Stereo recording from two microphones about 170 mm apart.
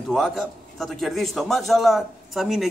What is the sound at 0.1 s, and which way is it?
A man's voice, centre (ahead or behind).